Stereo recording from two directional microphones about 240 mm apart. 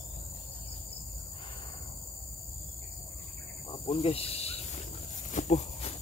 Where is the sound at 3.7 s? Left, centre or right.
Left.